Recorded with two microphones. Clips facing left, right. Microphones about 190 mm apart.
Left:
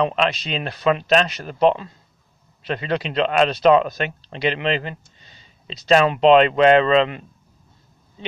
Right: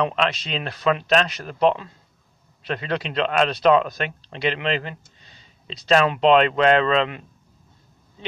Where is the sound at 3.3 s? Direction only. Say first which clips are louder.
Left 2 dB; 5° left (ahead or behind).